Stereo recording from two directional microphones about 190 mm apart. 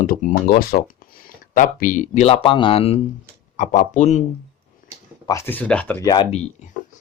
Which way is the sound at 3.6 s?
40° left (ahead or behind).